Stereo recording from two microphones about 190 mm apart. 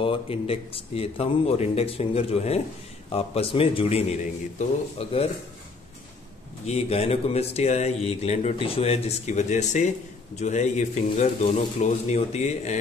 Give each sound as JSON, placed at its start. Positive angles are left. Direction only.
{"t": 0.0, "sound": "speech", "side_deg": 30}
{"t": 6.6, "sound": "speech", "side_deg": 35}